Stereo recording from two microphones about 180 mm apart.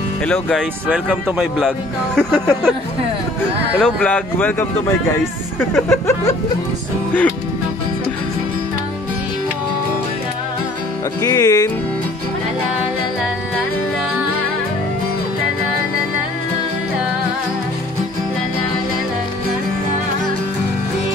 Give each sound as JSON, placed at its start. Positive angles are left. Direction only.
{"t": 0.3, "sound": "speech", "side_deg": 5}
{"t": 2.1, "sound": "speech", "side_deg": 5}
{"t": 3.8, "sound": "speech", "side_deg": 10}
{"t": 5.8, "sound": "speech", "side_deg": 15}
{"t": 11.2, "sound": "speech", "side_deg": 20}